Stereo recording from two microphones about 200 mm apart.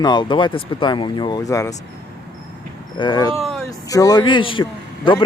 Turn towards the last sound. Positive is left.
turn(degrees=25)  # may be behind; listen again after turning